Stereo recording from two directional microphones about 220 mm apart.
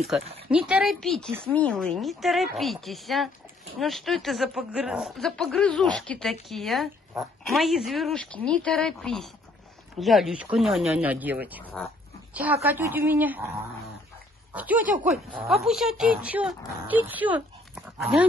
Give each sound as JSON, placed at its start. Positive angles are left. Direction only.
{"t": 0.2, "sound": "speech", "side_deg": -25}
{"t": 0.5, "sound": "speech", "side_deg": -5}
{"t": 14.5, "sound": "speech", "side_deg": -5}